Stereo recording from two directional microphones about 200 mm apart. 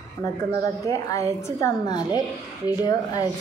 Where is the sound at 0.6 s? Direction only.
15° left (ahead or behind).